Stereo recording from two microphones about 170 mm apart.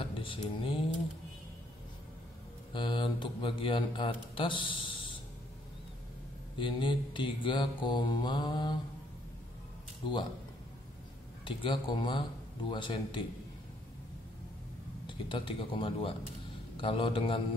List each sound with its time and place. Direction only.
0.0 s mantra: 30° left (ahead or behind)
2.7 s speech: 30° left (ahead or behind)
6.6 s speech: 30° left (ahead or behind)
11.4 s speech: 30° left (ahead or behind)
15.0 s a man's voice: 30° left (ahead or behind)